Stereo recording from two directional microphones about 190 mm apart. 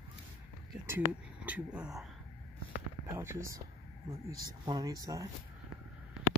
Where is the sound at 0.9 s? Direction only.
10° right (ahead or behind).